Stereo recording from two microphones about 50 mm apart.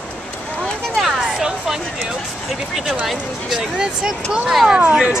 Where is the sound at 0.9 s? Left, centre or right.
Centre.